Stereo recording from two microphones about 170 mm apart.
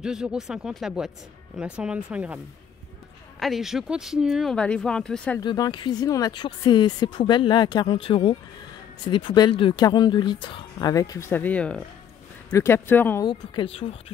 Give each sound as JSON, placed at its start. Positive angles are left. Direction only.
{"t": 0.0, "sound": "speech", "side_deg": -5}
{"t": 5.4, "sound": "speech", "side_deg": 25}
{"t": 13.2, "sound": "speech", "side_deg": 25}